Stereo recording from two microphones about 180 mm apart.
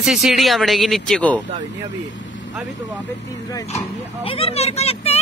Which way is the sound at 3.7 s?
30° left (ahead or behind).